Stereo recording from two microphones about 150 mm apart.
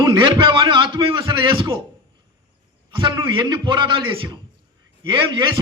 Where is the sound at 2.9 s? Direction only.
30° right (ahead or behind).